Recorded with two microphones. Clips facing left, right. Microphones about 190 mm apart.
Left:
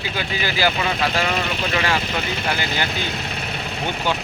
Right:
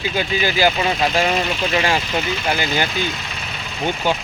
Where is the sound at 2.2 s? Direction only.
55° left (ahead or behind).